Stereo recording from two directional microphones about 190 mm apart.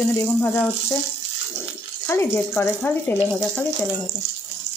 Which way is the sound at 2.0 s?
15° left (ahead or behind).